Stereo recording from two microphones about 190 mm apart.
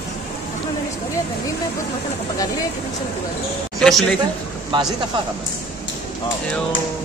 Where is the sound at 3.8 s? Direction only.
5° left (ahead or behind).